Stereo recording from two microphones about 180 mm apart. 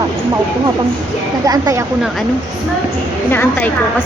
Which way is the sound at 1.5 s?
20° right (ahead or behind).